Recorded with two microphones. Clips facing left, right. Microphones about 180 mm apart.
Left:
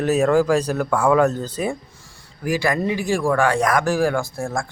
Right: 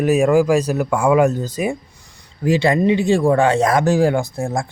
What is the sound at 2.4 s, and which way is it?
Speech, 25° right (ahead or behind).